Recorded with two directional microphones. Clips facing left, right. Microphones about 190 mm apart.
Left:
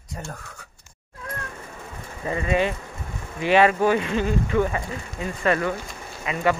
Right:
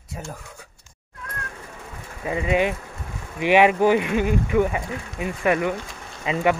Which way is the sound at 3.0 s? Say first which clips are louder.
Left 1 dB; centre (ahead or behind).